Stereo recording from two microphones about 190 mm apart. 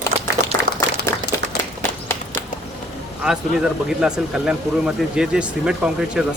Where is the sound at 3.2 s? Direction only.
5° right (ahead or behind).